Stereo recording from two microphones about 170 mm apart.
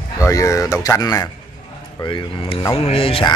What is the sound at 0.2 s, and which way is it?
Speech, 20° left (ahead or behind).